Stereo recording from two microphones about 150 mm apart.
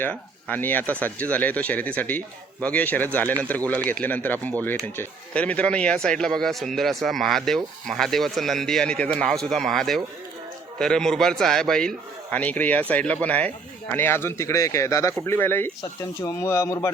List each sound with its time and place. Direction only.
0.0 s a man's voice: 10° left (ahead or behind)